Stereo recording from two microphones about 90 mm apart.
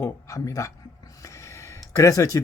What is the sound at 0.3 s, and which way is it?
Speech, 35° left (ahead or behind).